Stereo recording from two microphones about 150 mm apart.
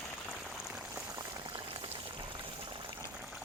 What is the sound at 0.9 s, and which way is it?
Boiling, 15° right (ahead or behind).